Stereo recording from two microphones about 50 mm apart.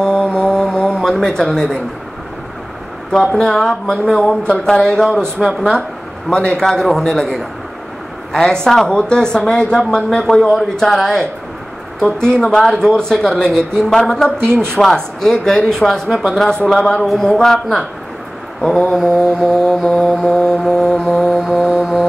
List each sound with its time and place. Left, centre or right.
0.0 s a sound: centre
3.3 s a woman's voice: centre
9.9 s speech: centre
14.4 s speech: right
14.7 s a man's voice: centre
21.2 s a man's voice: centre